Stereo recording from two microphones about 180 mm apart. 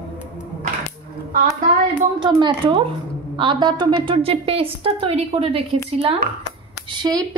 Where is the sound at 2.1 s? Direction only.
25° right (ahead or behind).